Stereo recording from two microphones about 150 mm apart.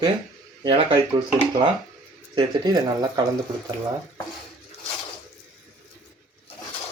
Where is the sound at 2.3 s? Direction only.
25° right (ahead or behind).